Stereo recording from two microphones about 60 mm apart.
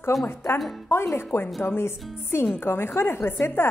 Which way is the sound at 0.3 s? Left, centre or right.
Left.